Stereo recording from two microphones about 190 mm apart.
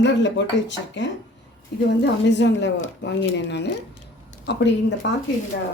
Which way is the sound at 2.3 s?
70° left (ahead or behind).